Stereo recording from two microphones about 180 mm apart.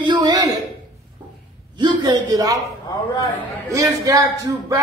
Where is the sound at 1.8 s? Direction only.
20° right (ahead or behind).